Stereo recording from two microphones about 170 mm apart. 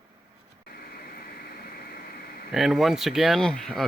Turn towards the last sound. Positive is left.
turn(degrees=0)  # may be behind; listen again after turning